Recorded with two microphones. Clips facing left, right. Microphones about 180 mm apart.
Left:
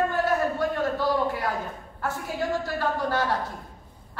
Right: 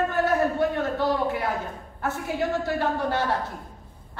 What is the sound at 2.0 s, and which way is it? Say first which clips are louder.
A woman's voice: right 2 dB; 20° right (ahead or behind).